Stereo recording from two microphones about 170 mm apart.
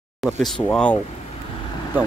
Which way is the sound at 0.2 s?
Centre (ahead or behind).